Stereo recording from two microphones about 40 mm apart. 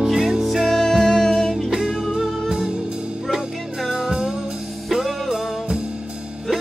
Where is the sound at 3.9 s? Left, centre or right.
Centre.